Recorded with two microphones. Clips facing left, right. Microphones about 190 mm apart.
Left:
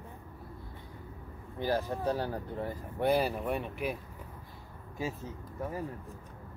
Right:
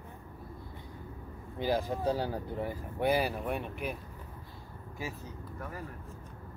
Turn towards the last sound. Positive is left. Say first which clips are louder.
# left 5 dB
turn(degrees=25)  # may be behind; listen again after turning